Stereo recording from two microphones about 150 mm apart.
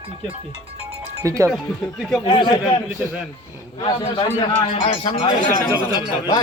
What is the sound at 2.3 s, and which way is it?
Speech, 30° left (ahead or behind).